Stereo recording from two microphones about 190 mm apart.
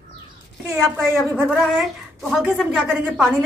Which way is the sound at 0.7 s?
Centre (ahead or behind).